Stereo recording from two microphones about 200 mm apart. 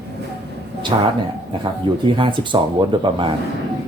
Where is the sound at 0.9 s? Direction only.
20° right (ahead or behind).